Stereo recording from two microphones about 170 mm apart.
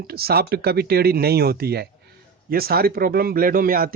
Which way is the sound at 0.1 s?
65° right (ahead or behind).